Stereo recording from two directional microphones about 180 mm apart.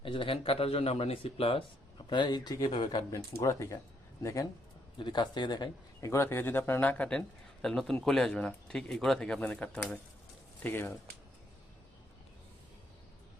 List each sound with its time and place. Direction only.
0.0 s speech: 30° left (ahead or behind); by 10.9 s 10° left (ahead or behind)